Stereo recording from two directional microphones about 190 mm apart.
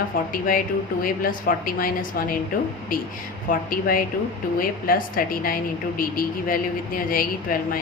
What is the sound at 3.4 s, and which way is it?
Speech, 50° left (ahead or behind).